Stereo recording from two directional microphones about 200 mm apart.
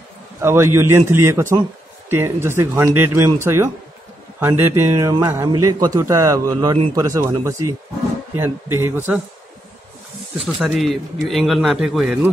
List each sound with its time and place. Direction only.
0.4 s a man's voice: 15° right (ahead or behind)
8.7 s a man's voice: 10° right (ahead or behind)
10.4 s a man's voice: 5° right (ahead or behind)